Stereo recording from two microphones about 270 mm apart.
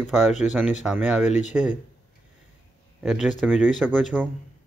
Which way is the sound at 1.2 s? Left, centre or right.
Left.